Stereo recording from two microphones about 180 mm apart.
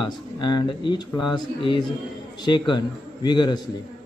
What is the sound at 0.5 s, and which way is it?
A man's voice, 25° left (ahead or behind).